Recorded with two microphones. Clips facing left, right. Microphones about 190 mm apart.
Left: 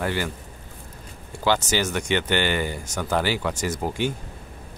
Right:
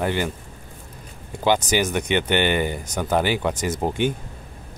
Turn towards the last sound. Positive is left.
turn(degrees=-20)  # may be behind; listen again after turning